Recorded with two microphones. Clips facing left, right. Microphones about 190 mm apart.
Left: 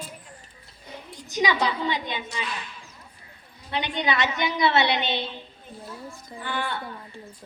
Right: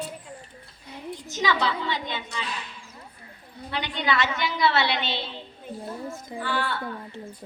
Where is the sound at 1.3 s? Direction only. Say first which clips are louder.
Left 2 dB; 15° left (ahead or behind).